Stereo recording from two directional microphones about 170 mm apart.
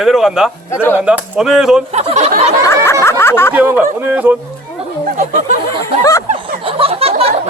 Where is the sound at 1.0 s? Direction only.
5° right (ahead or behind).